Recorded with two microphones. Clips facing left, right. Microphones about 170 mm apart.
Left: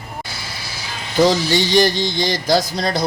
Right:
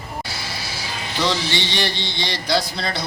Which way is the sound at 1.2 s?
45° left (ahead or behind).